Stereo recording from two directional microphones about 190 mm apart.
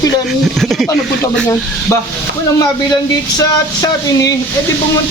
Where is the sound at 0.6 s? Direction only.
Centre (ahead or behind).